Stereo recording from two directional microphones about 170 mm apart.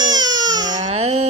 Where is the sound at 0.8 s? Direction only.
40° right (ahead or behind).